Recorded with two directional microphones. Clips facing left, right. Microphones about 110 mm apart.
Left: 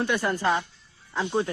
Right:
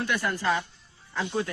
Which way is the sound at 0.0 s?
25° left (ahead or behind).